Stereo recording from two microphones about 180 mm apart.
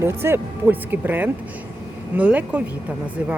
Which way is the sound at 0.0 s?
15° right (ahead or behind).